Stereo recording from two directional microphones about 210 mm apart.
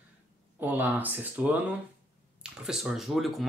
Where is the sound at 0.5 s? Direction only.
10° right (ahead or behind).